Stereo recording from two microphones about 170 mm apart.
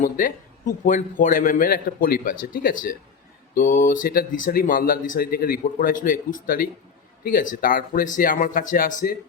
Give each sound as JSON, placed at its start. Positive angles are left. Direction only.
{"t": 0.0, "sound": "speech", "side_deg": 55}